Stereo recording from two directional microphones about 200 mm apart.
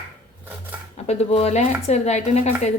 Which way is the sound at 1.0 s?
35° left (ahead or behind).